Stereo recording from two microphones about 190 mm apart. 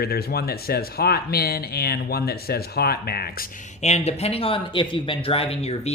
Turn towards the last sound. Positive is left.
turn(degrees=35)  # may be behind; listen again after turning